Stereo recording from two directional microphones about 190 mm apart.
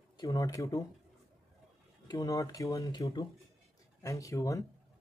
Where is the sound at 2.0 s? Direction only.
15° left (ahead or behind).